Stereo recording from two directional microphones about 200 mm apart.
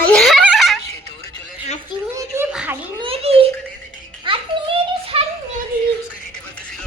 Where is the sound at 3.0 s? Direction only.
30° right (ahead or behind).